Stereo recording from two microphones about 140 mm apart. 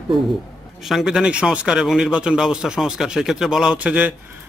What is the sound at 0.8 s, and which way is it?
Speech, centre (ahead or behind).